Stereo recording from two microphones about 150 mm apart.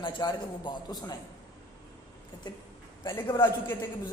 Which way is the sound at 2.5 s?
30° left (ahead or behind).